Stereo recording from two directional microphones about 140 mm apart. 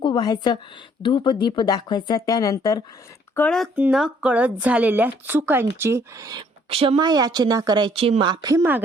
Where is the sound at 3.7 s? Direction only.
10° right (ahead or behind); by 8.6 s 30° right (ahead or behind).